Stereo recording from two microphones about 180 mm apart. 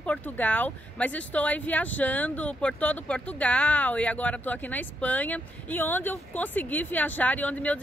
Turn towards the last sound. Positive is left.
turn(degrees=10)  # may be behind; listen again after turning